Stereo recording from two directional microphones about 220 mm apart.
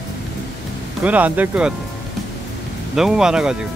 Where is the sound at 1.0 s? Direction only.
5° right (ahead or behind).